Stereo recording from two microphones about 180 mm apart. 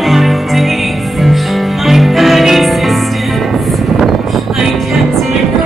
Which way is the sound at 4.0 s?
Centre (ahead or behind).